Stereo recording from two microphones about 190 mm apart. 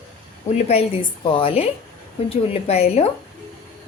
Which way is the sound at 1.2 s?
30° left (ahead or behind).